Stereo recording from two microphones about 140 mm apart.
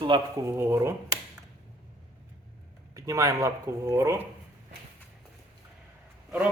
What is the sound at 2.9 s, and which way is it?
Speech, 25° right (ahead or behind).